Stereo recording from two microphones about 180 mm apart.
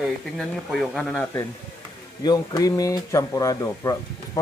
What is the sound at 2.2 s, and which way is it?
A man's voice, 20° left (ahead or behind).